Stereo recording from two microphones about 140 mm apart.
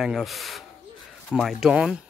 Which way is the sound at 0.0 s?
Centre (ahead or behind).